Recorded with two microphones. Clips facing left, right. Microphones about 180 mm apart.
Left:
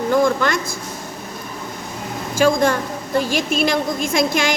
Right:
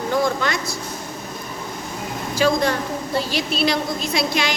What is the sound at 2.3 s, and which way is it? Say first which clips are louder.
A woman's voice: left 3 dB; 50° left (ahead or behind).